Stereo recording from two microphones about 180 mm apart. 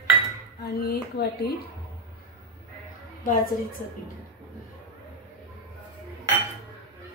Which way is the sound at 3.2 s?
50° left (ahead or behind).